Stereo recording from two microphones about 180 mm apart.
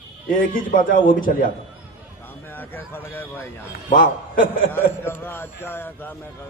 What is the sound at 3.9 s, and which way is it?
Speech, 50° left (ahead or behind).